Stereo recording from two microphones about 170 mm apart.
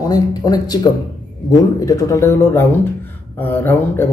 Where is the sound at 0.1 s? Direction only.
25° left (ahead or behind).